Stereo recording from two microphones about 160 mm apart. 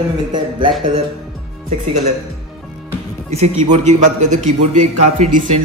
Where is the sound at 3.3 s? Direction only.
45° right (ahead or behind).